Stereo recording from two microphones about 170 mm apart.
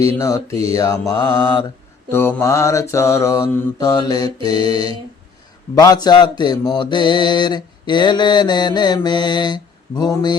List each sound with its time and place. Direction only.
0.2 s mantra: 20° left (ahead or behind)